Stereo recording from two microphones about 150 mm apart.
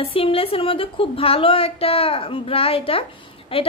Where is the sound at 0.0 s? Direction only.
40° left (ahead or behind).